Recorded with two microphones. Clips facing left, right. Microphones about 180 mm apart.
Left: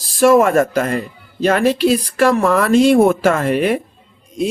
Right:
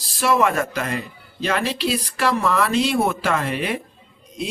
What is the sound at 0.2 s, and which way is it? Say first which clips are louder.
Speech: left 8 dB; 50° left (ahead or behind).